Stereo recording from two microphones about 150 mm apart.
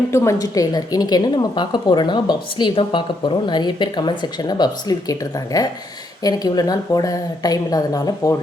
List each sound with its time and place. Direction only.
0.1 s a woman's voice: 20° left (ahead or behind)